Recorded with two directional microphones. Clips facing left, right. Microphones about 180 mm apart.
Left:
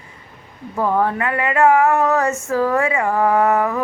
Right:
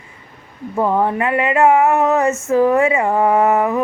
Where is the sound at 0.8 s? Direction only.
20° right (ahead or behind).